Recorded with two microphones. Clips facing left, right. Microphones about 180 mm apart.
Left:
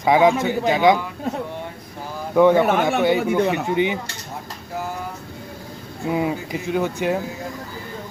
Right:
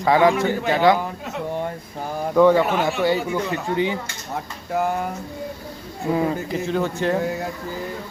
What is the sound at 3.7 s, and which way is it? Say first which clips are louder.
Speech: right 2 dB; 15° left (ahead or behind).